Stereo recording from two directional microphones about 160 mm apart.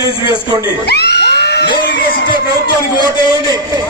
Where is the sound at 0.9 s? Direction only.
90° left.